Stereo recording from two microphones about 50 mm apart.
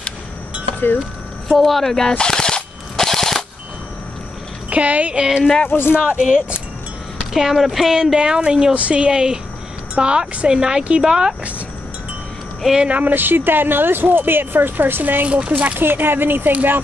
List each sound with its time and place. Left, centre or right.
1.6 s gunshot: centre
4.6 s speech: right
5.2 s speech: centre
5.7 s speech: left
5.9 s a woman's voice: centre
12.9 s speech: right
15.2 s speech: right
15.8 s speech: right